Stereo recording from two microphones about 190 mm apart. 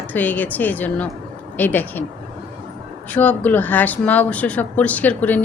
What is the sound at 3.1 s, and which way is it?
A woman's voice, 10° left (ahead or behind).